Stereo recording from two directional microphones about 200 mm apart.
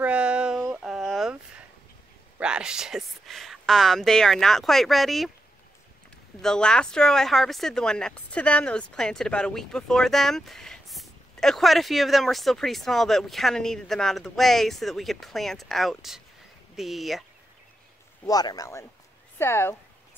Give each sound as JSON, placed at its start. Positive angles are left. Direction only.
{"t": 0.0, "sound": "a sound", "side_deg": -5}
{"t": 2.3, "sound": "speech", "side_deg": -5}
{"t": 6.4, "sound": "speech", "side_deg": 5}
{"t": 18.2, "sound": "speech", "side_deg": 20}